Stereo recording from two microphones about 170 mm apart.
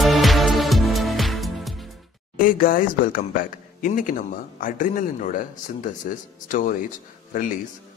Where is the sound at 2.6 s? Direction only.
55° left (ahead or behind).